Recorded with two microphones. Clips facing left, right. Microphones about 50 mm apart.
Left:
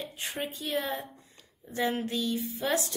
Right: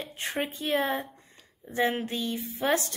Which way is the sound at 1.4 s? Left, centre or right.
Centre.